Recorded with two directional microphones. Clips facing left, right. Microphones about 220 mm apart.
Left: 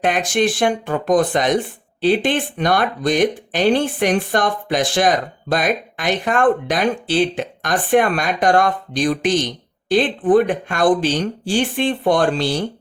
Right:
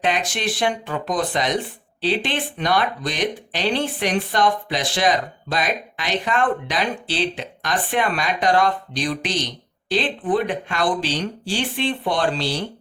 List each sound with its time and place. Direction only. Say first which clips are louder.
0.0 s speech: left 6 dB; 50° left (ahead or behind)